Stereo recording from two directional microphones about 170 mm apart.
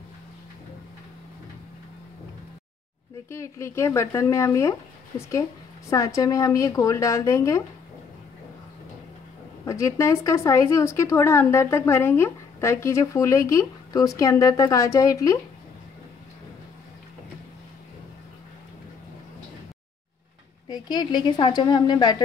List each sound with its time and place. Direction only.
3.3 s a woman's voice: 15° left (ahead or behind)
9.7 s a woman's voice: 20° left (ahead or behind)
20.6 s a woman's voice: 25° left (ahead or behind)